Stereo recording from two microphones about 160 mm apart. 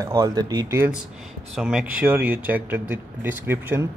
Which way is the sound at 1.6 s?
5° right (ahead or behind).